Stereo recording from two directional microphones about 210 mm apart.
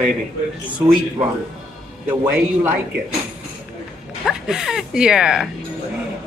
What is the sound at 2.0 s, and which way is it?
Speech, 5° right (ahead or behind).